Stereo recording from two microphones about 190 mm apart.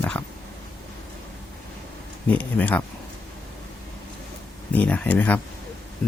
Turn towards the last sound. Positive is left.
turn(degrees=10)  # may be behind; listen again after turning